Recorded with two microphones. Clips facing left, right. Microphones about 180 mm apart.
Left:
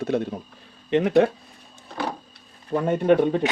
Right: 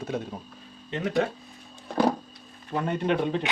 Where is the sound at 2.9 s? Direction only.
50° left (ahead or behind).